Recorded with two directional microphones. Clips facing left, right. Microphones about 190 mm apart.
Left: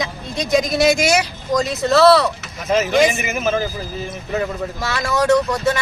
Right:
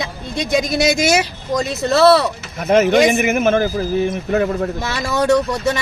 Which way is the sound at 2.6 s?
60° right (ahead or behind).